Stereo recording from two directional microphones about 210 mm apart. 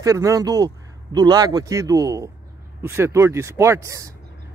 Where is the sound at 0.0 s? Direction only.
15° right (ahead or behind).